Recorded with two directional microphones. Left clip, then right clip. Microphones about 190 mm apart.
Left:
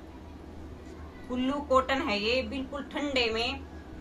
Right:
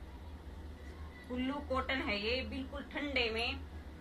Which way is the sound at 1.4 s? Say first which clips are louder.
Left 11 dB; 10° left (ahead or behind).